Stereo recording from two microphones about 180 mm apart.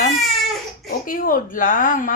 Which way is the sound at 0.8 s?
50° left (ahead or behind).